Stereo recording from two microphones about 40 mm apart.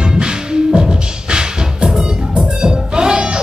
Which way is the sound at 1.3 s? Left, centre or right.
Right.